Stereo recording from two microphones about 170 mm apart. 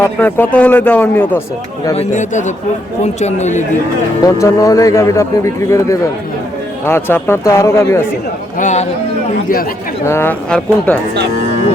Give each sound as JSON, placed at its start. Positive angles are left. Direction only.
{"t": 0.0, "sound": "a man's voice", "side_deg": 10}
{"t": 1.9, "sound": "a man's voice", "side_deg": 40}
{"t": 4.2, "sound": "a man's voice", "side_deg": 20}
{"t": 8.5, "sound": "speech", "side_deg": 45}
{"t": 10.1, "sound": "a man's voice", "side_deg": 10}